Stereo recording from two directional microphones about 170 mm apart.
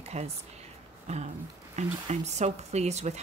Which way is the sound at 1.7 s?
40° right (ahead or behind).